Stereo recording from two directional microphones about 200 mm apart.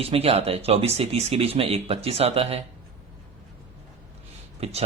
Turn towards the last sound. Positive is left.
turn(degrees=-30)  # may be behind; listen again after turning